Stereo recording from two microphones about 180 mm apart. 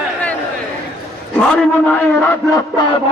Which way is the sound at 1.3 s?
5° left (ahead or behind).